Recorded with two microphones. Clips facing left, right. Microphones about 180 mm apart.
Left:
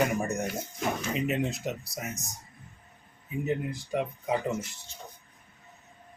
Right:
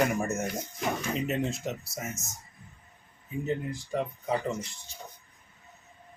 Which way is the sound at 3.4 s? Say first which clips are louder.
Left 1 dB; 10° left (ahead or behind).